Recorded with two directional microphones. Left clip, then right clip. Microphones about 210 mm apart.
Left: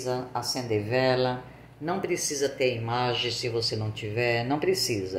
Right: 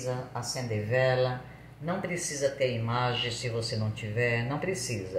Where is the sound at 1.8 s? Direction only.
45° left (ahead or behind).